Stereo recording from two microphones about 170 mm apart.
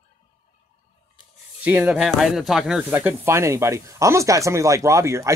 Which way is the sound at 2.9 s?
10° right (ahead or behind).